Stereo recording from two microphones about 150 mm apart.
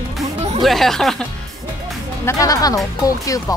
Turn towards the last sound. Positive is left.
turn(degrees=25)  # may be behind; listen again after turning